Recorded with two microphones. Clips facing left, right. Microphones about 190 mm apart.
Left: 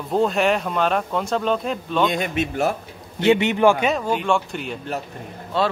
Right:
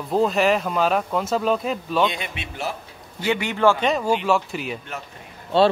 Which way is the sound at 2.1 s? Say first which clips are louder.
Left 10 dB; 45° left (ahead or behind).